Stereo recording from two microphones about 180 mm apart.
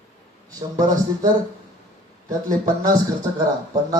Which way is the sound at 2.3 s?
20° right (ahead or behind).